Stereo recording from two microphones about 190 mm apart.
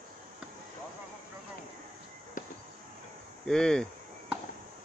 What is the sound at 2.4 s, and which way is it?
Insect, 45° left (ahead or behind).